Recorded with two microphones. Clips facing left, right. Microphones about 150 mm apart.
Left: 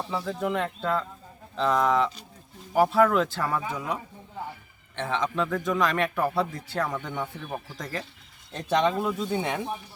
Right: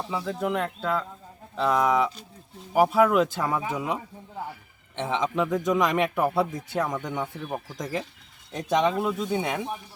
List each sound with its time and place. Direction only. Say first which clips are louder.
0.0 s speech: right 1 dB; centre (ahead or behind)